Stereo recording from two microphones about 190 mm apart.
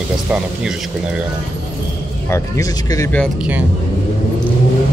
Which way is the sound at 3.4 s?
10° right (ahead or behind).